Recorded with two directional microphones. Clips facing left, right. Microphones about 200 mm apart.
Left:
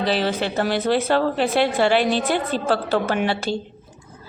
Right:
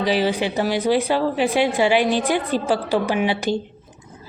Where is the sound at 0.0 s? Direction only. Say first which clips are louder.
Right 2 dB; 10° right (ahead or behind).